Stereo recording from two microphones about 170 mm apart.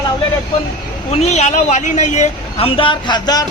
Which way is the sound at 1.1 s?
40° left (ahead or behind).